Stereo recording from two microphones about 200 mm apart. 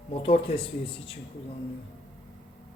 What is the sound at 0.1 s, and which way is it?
Speech, 30° left (ahead or behind).